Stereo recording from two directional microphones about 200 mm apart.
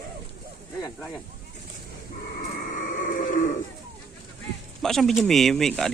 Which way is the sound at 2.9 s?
40° left (ahead or behind).